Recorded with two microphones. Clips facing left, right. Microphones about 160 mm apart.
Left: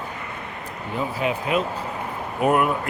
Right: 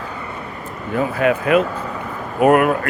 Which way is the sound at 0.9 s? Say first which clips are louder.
Right 7 dB; 60° right (ahead or behind).